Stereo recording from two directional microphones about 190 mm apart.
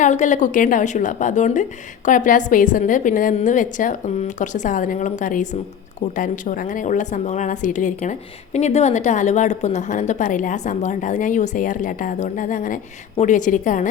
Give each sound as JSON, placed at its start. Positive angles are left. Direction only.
{"t": 0.0, "sound": "a woman's voice", "side_deg": 40}